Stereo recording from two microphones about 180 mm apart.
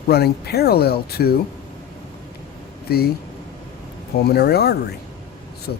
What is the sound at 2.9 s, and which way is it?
Speech, 60° left (ahead or behind).